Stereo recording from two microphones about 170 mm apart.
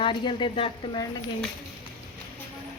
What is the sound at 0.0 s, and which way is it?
Speech, 30° left (ahead or behind).